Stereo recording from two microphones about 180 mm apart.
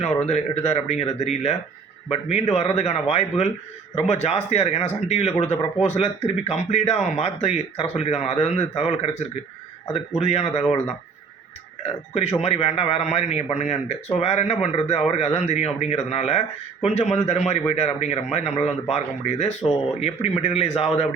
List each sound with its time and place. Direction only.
0.3 s a man's voice: 40° left (ahead or behind)
11.8 s a man's voice: 35° left (ahead or behind)